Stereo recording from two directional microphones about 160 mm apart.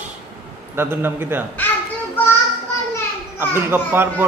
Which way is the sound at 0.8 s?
15° right (ahead or behind).